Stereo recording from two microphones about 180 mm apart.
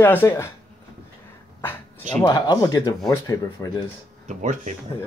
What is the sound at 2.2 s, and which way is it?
Speech, 20° left (ahead or behind).